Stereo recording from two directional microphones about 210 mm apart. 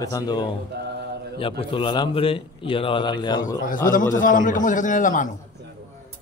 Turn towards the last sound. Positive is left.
turn(degrees=40)  # may be behind; listen again after turning